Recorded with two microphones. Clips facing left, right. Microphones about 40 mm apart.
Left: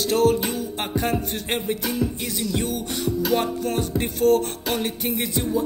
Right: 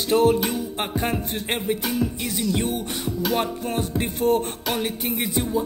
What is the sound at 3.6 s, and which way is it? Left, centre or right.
Music, centre.